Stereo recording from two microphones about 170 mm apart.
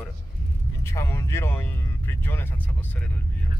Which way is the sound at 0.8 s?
15° left (ahead or behind).